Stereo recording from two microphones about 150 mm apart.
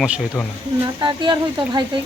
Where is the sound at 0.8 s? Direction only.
30° right (ahead or behind).